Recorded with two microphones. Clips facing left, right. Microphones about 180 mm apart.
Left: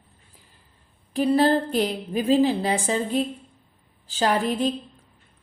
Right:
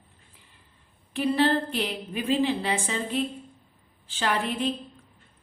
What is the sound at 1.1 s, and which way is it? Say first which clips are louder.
Speech: left 4 dB; 40° left (ahead or behind).